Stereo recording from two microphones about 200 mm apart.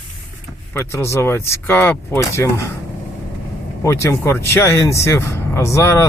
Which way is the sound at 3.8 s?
15° left (ahead or behind).